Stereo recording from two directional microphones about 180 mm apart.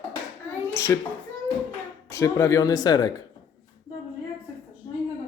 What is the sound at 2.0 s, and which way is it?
Speech, 15° left (ahead or behind).